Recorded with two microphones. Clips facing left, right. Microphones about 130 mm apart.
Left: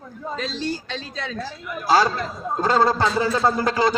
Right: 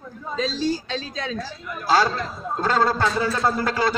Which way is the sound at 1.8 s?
15° left (ahead or behind).